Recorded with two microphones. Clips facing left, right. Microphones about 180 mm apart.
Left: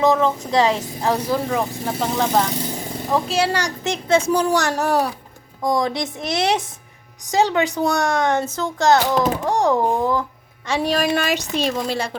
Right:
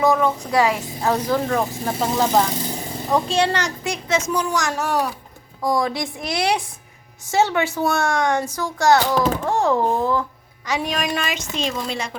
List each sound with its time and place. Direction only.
0.0 s a woman's voice: 20° left (ahead or behind)
1.5 s speech: centre (ahead or behind)
3.8 s a woman's voice: 30° left (ahead or behind)
5.6 s a woman's voice: 20° left (ahead or behind)
9.1 s a child's voice: 5° left (ahead or behind)
10.7 s a woman's voice: 35° left (ahead or behind)